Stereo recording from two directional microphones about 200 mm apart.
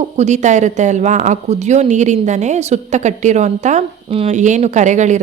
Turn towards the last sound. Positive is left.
turn(degrees=-35)  # may be behind; listen again after turning